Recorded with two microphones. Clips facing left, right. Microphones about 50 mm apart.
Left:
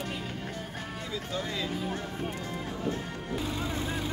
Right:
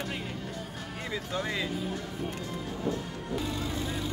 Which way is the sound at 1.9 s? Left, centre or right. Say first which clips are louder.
Left 1 dB; left.